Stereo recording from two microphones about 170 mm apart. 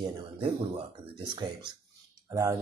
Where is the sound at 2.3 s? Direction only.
20° right (ahead or behind).